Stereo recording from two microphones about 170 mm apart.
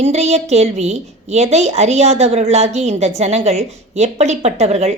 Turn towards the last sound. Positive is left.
turn(degrees=-40)  # may be behind; listen again after turning